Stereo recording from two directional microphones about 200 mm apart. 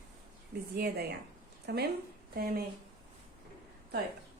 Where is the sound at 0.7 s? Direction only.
55° right (ahead or behind).